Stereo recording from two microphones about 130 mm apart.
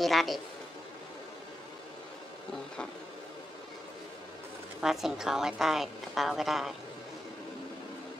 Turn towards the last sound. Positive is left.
turn(degrees=0)  # may be behind; listen again after turning